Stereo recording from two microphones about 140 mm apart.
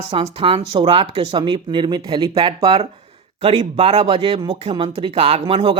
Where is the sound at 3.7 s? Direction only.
50° right (ahead or behind).